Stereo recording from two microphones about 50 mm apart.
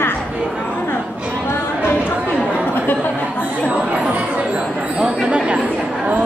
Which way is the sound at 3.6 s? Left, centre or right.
Right.